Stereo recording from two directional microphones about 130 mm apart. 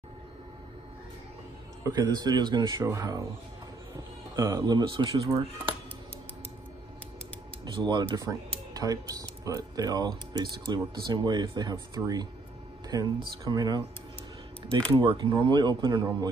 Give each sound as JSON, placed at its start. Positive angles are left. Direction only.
{"t": 1.9, "sound": "speech", "side_deg": -30}
{"t": 4.4, "sound": "speech", "side_deg": -30}
{"t": 7.6, "sound": "speech", "side_deg": -35}
{"t": 15.0, "sound": "speech", "side_deg": -40}